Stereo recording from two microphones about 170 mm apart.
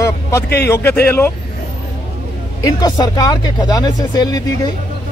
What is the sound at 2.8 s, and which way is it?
Speech, 25° left (ahead or behind).